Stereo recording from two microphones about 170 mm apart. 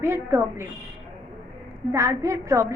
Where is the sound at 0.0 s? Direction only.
15° right (ahead or behind).